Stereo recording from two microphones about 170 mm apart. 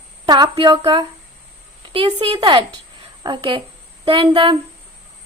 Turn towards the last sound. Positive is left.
turn(degrees=-30)  # may be behind; listen again after turning